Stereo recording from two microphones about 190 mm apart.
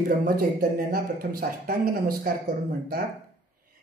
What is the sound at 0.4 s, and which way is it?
Speech, 50° right (ahead or behind).